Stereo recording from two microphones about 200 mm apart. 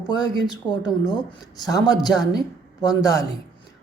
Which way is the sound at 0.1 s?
20° left (ahead or behind).